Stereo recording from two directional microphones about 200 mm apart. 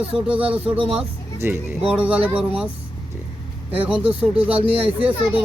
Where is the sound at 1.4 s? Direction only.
10° right (ahead or behind).